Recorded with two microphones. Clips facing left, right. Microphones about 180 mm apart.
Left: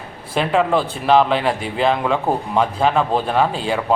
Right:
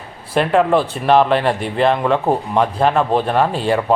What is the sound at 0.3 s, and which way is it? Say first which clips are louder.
Speech: right 3 dB; centre (ahead or behind).